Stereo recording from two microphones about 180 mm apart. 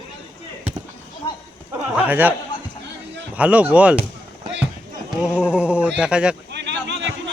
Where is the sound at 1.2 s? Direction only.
30° left (ahead or behind).